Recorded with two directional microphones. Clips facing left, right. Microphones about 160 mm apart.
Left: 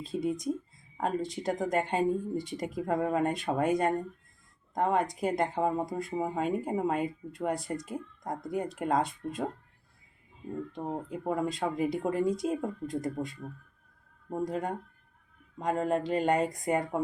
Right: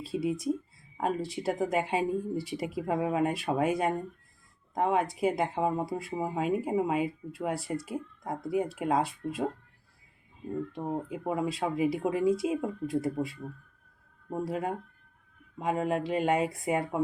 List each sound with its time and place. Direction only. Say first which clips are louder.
0.0 s speech: right 1 dB; 5° right (ahead or behind)
10.7 s speech: right 2 dB; 5° right (ahead or behind)